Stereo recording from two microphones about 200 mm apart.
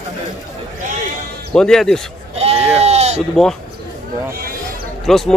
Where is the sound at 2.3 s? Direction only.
30° right (ahead or behind).